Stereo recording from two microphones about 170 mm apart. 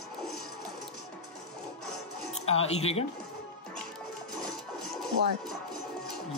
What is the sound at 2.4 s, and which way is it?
Speech, 35° left (ahead or behind).